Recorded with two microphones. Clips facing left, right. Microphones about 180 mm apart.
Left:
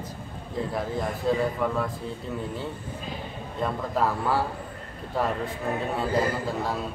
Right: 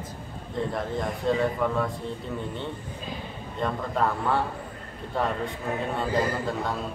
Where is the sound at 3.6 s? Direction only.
5° left (ahead or behind).